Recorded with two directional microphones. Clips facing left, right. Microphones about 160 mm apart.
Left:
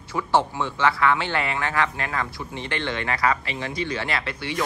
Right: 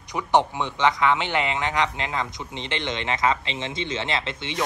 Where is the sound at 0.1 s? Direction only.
20° right (ahead or behind).